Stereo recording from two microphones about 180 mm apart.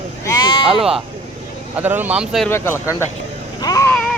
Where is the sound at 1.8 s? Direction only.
10° right (ahead or behind).